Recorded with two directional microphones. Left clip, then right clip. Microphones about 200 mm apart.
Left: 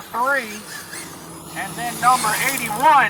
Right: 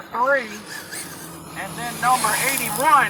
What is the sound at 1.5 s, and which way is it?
Speech, 30° left (ahead or behind).